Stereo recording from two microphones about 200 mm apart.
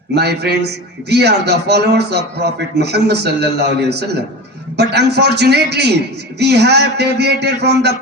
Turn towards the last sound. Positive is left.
turn(degrees=-55)  # may be behind; listen again after turning